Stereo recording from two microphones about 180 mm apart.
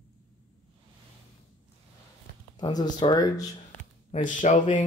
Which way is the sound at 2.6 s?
20° left (ahead or behind).